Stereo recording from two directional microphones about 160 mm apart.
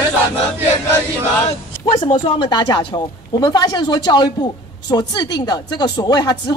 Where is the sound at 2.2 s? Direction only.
30° left (ahead or behind).